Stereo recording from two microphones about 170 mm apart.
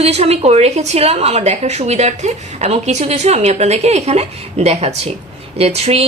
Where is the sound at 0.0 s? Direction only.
35° right (ahead or behind).